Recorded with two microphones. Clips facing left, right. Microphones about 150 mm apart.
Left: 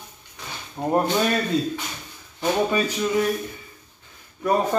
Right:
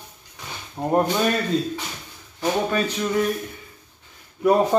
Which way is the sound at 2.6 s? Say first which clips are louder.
Even; 10° left (ahead or behind).